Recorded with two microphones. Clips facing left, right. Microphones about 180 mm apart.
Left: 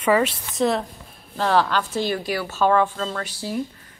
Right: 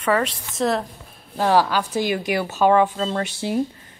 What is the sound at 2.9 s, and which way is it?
Speech, 25° right (ahead or behind).